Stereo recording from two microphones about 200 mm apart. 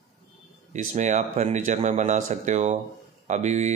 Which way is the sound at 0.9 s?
40° right (ahead or behind).